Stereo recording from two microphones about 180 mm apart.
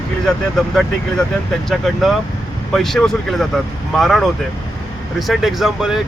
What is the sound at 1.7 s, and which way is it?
Speech, centre (ahead or behind).